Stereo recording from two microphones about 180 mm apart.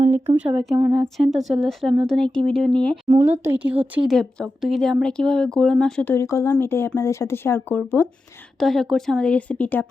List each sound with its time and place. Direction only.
0.3 s a woman's voice: 5° right (ahead or behind)
3.1 s speech: 35° right (ahead or behind)
3.4 s speech: 10° right (ahead or behind)
4.1 s a woman's voice: 5° left (ahead or behind)